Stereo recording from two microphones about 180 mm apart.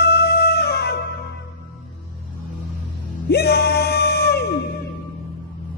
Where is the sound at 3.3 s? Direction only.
60° left (ahead or behind).